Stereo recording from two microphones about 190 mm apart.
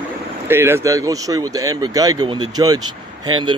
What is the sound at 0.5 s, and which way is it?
Speech, 10° right (ahead or behind).